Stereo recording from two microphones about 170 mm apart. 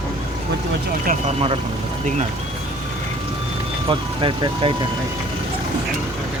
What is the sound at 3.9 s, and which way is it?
Speech, 30° right (ahead or behind).